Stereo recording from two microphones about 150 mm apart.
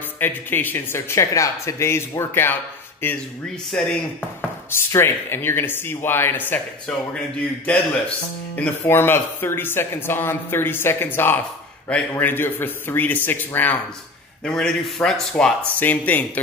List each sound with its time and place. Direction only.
0.2 s speech: 15° left (ahead or behind)
4.6 s speech: 15° left (ahead or behind)